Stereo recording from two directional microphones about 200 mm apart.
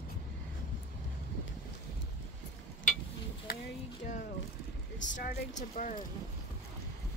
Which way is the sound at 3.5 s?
45° left (ahead or behind).